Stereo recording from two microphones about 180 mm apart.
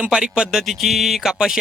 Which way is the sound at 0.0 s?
5° right (ahead or behind).